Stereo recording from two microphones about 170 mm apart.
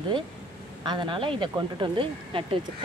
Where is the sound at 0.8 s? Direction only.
30° right (ahead or behind).